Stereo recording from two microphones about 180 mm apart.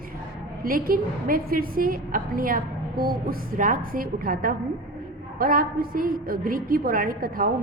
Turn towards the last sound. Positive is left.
turn(degrees=-55)  # may be behind; listen again after turning